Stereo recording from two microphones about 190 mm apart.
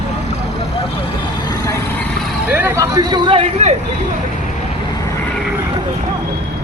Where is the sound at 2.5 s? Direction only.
10° right (ahead or behind); by 3.7 s 30° right (ahead or behind).